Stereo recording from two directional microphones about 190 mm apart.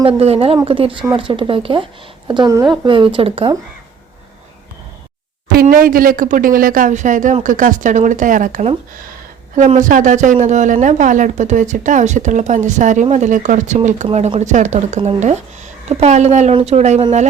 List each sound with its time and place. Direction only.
0.2 s speech: 30° right (ahead or behind)
5.6 s a woman's voice: 45° right (ahead or behind)